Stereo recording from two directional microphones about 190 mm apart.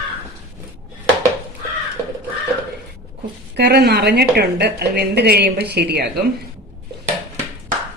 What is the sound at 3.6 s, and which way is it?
A woman's voice, 60° right (ahead or behind).